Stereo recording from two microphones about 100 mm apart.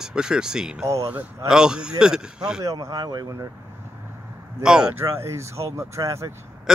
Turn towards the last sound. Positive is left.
turn(degrees=-5)  # may be behind; listen again after turning